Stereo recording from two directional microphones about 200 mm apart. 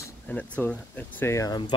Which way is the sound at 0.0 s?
10° left (ahead or behind).